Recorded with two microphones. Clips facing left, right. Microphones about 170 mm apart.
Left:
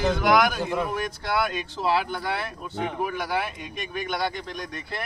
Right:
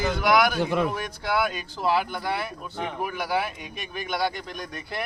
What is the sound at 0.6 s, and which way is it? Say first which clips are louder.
Speech: right 3 dB; 75° right (ahead or behind).